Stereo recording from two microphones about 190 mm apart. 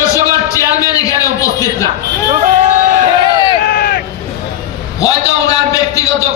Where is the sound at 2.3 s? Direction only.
40° right (ahead or behind).